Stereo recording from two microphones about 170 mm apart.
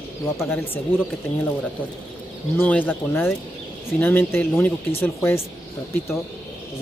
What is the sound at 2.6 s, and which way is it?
Speech, 10° left (ahead or behind).